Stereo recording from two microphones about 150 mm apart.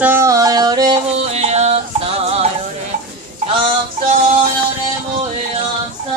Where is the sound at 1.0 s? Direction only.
45° right (ahead or behind).